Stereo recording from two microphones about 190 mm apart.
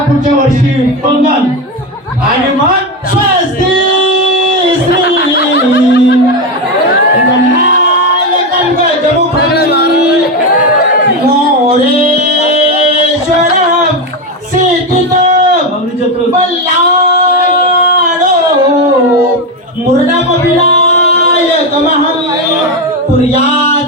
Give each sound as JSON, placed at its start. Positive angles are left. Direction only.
{"t": 4.9, "sound": "snicker", "side_deg": 60}
{"t": 9.4, "sound": "music", "side_deg": 55}
{"t": 20.7, "sound": "music", "side_deg": 35}